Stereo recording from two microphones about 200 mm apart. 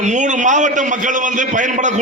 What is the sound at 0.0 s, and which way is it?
A man's voice, 35° right (ahead or behind).